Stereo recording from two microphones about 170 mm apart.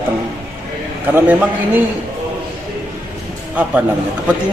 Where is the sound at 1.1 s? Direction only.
10° right (ahead or behind).